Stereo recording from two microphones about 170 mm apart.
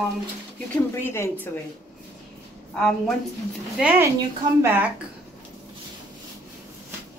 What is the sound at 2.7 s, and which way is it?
Speech, 5° left (ahead or behind).